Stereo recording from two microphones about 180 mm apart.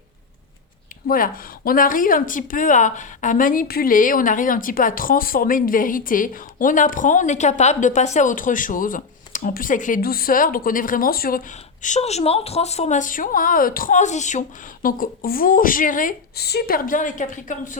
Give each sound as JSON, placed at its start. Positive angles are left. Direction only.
{"t": 1.0, "sound": "speech", "side_deg": 50}